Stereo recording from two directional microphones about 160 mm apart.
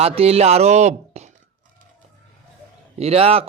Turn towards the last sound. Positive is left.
turn(degrees=-40)  # may be behind; listen again after turning